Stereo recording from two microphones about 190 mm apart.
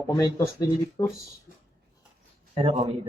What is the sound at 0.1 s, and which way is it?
Speech, 15° left (ahead or behind).